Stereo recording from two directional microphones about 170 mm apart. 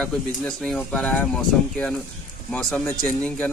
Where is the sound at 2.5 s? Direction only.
10° left (ahead or behind).